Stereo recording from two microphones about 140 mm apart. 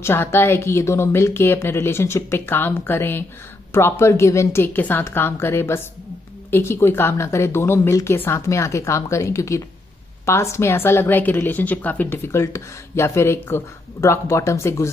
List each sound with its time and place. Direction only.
0.0 s a woman's voice: 15° left (ahead or behind)